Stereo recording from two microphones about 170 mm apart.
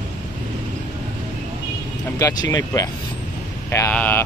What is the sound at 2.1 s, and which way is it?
Speech, 20° left (ahead or behind).